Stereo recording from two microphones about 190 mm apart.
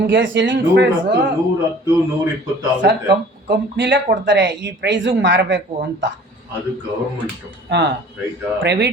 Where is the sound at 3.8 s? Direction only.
70° right (ahead or behind).